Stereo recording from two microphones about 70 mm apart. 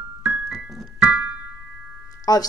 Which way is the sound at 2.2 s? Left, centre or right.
Left.